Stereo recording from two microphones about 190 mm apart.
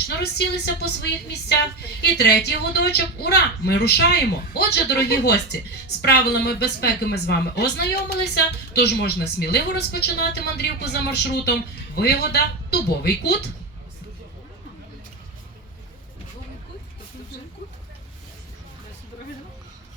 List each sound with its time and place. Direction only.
0.2 s speech: 60° left (ahead or behind)